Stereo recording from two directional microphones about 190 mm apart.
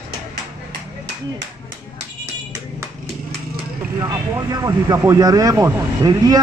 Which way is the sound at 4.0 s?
15° right (ahead or behind).